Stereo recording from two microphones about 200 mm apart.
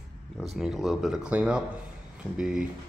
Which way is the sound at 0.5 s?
Centre (ahead or behind).